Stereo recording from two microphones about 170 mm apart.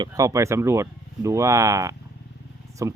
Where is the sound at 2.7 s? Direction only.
20° right (ahead or behind).